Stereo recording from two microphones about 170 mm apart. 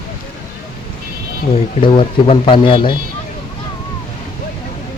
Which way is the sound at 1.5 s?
35° left (ahead or behind).